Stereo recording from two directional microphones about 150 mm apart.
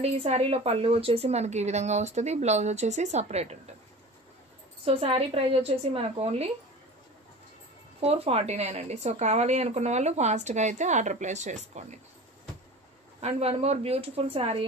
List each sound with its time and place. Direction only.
0.0 s speech: 45° right (ahead or behind)
4.8 s a woman's voice: 40° right (ahead or behind)
8.0 s speech: 40° right (ahead or behind)
13.2 s a woman's voice: 45° right (ahead or behind)